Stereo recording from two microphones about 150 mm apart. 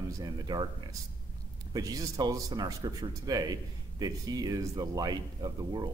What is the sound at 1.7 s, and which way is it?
A man's voice, 25° right (ahead or behind).